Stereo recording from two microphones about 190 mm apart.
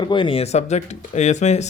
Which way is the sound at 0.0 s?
25° left (ahead or behind).